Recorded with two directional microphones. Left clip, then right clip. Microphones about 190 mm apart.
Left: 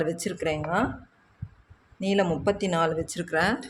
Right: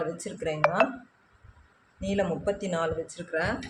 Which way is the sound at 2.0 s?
50° left (ahead or behind).